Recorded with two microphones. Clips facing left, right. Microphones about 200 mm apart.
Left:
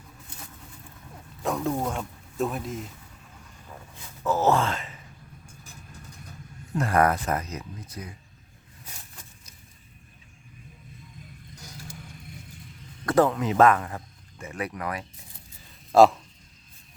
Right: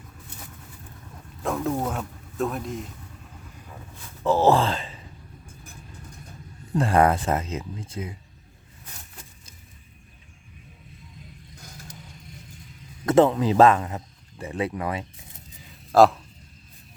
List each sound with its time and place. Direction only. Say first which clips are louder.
1.4 s speech: right 1 dB; centre (ahead or behind)
4.2 s speech: right 4 dB; 30° right (ahead or behind)
6.7 s speech: right 3 dB; 30° right (ahead or behind)
13.1 s speech: right 4 dB; 25° right (ahead or behind)
15.9 s speech: even; centre (ahead or behind)